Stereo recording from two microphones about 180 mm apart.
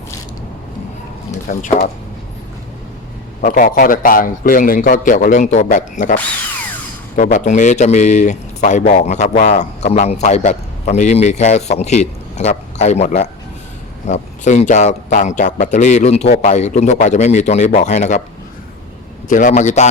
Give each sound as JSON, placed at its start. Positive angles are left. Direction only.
{"t": 1.5, "sound": "a man's voice", "side_deg": 50}
{"t": 3.4, "sound": "a man's voice", "side_deg": 50}
{"t": 7.2, "sound": "a man's voice", "side_deg": 45}
{"t": 19.3, "sound": "a man's voice", "side_deg": 45}